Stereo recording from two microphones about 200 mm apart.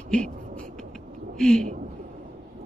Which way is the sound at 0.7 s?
5° left (ahead or behind).